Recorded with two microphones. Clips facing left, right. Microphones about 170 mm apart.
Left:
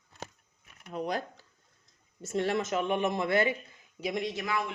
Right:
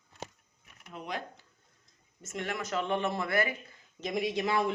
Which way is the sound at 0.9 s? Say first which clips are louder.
Left 6 dB; 40° left (ahead or behind).